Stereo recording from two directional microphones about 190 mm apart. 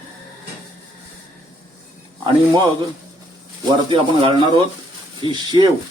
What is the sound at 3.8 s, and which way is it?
Speech, 30° right (ahead or behind).